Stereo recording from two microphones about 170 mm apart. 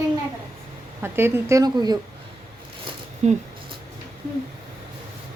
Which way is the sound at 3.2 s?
40° right (ahead or behind).